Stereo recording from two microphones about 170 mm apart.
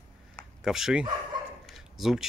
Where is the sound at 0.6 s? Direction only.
5° right (ahead or behind).